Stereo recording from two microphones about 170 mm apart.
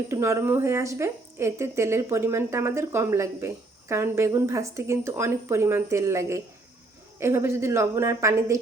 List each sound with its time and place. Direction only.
0.1 s speech: 15° right (ahead or behind)